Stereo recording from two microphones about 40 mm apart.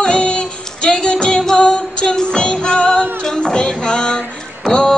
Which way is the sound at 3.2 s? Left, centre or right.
Left.